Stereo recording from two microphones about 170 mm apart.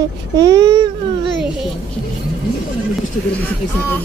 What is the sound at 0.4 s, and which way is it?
Speech, 25° right (ahead or behind).